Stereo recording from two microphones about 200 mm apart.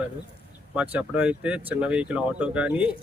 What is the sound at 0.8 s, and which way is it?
Speech, 5° right (ahead or behind).